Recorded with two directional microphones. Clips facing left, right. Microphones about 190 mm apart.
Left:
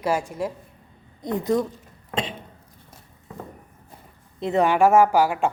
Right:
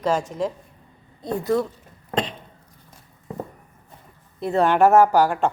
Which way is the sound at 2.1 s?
5° left (ahead or behind).